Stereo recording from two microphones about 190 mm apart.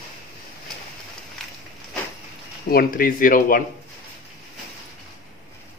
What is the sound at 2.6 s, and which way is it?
Speech, 50° left (ahead or behind).